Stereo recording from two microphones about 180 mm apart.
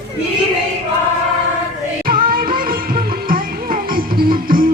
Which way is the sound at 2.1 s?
50° right (ahead or behind).